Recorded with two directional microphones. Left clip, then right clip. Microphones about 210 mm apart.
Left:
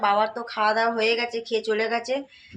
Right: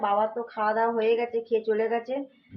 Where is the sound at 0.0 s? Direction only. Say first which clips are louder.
Left 3 dB; 15° left (ahead or behind).